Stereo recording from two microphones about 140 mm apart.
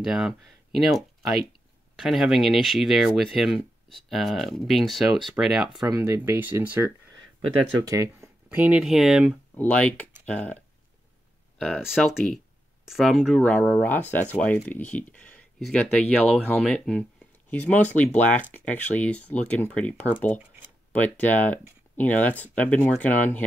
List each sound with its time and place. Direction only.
0.0 s speech: 5° right (ahead or behind)
2.0 s speech: 5° right (ahead or behind)
5.9 s speech: 20° right (ahead or behind); by 9.4 s 5° right (ahead or behind)
9.6 s speech: 10° left (ahead or behind)